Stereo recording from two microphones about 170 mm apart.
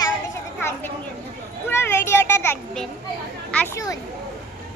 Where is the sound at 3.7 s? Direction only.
20° left (ahead or behind).